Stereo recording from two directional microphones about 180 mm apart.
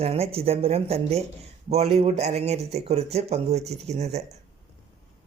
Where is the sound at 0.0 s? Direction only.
35° right (ahead or behind).